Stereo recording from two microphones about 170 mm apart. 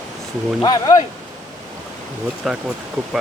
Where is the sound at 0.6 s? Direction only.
20° left (ahead or behind).